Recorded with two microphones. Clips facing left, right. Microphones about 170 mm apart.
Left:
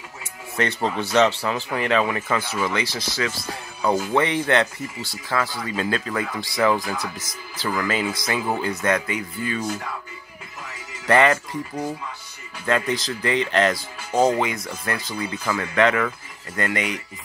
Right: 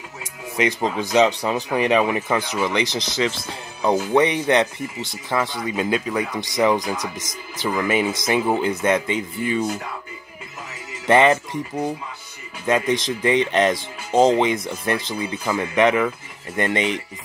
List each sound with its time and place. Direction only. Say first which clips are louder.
0.6 s speech: right 2 dB; 15° right (ahead or behind)
11.1 s speech: right 2 dB; 20° right (ahead or behind)